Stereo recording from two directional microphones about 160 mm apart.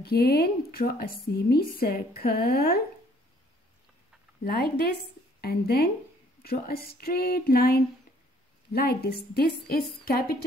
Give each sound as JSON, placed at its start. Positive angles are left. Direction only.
{"t": 0.0, "sound": "speech", "side_deg": 75}
{"t": 4.5, "sound": "a woman's voice", "side_deg": 75}